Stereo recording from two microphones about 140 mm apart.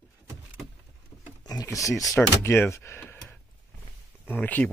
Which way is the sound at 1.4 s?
25° left (ahead or behind).